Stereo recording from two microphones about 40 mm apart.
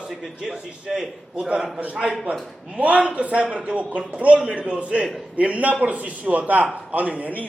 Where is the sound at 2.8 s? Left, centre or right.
Right.